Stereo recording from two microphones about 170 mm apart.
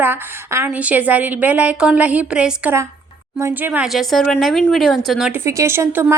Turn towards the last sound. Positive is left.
turn(degrees=-15)  # may be behind; listen again after turning